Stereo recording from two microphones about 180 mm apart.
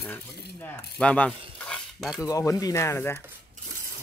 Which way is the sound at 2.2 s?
20° left (ahead or behind).